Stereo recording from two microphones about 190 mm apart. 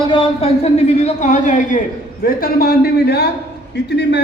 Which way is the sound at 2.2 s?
50° left (ahead or behind).